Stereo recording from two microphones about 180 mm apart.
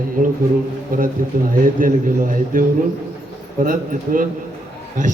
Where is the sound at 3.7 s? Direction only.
50° right (ahead or behind).